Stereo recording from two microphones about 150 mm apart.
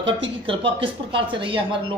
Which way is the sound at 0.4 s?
35° right (ahead or behind).